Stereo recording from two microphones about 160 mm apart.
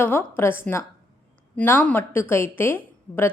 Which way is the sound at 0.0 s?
15° left (ahead or behind).